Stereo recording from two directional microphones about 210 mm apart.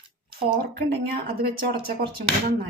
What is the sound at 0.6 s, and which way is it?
Speech, 45° right (ahead or behind).